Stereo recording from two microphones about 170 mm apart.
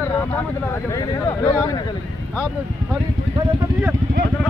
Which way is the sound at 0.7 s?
20° left (ahead or behind).